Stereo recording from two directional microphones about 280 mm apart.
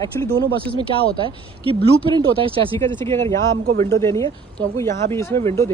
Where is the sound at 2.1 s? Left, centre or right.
Centre.